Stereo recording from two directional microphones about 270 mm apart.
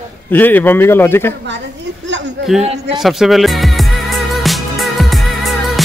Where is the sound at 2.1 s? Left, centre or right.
Right.